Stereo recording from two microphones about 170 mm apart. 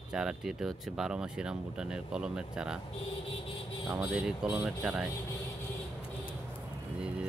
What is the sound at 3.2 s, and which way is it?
Vehicle, 30° left (ahead or behind).